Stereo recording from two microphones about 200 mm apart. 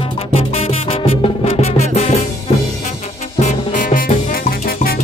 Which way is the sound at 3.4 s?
40° left (ahead or behind).